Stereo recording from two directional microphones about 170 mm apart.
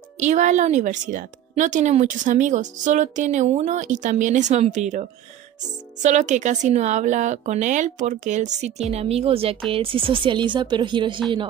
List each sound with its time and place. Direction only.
0.2 s a woman's voice: 45° right (ahead or behind)
6.0 s a woman's voice: 45° right (ahead or behind); by 11.2 s 30° right (ahead or behind)